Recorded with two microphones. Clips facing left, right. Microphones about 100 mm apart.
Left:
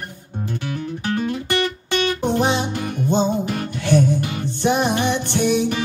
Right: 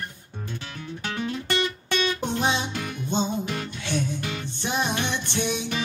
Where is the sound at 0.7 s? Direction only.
50° left (ahead or behind).